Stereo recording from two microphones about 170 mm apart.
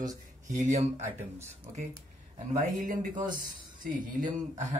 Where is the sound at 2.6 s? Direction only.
45° right (ahead or behind).